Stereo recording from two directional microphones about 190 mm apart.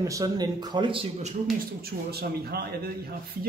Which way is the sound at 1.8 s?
55° right (ahead or behind).